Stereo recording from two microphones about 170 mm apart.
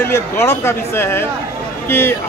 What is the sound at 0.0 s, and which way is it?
Speech, 15° left (ahead or behind).